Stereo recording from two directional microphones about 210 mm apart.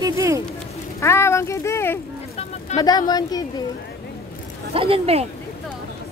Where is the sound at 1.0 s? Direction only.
10° left (ahead or behind).